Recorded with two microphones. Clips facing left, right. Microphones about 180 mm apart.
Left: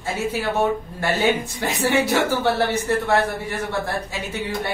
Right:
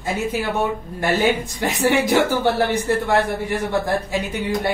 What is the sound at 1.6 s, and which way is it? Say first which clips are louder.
Speech: right 4 dB; 15° right (ahead or behind).